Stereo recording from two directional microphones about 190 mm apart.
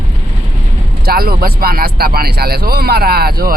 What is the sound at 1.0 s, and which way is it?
Speech, 50° right (ahead or behind).